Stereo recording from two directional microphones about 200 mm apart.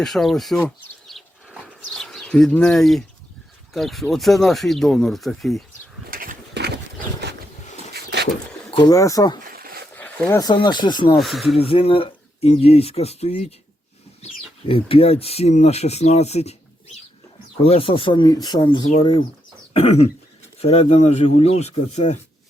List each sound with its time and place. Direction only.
0.0 s speech: centre (ahead or behind)
1.0 s bird: centre (ahead or behind)
3.7 s speech: centre (ahead or behind)
6.1 s bird: 45° right (ahead or behind)
7.9 s a sound: 55° right (ahead or behind)
8.7 s speech: 20° left (ahead or behind)
9.5 s a sound: 50° right (ahead or behind)
9.9 s a sound: 5° left (ahead or behind)
10.4 s speech: 20° left (ahead or behind)
11.2 s speech: centre (ahead or behind)
11.5 s speech: 30° left (ahead or behind)
14.2 s a sound: 30° left (ahead or behind)
14.7 s speech: 25° left (ahead or behind)
17.6 s speech: 25° left (ahead or behind)